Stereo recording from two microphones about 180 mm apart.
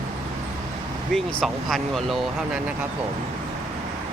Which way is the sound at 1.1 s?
Centre (ahead or behind).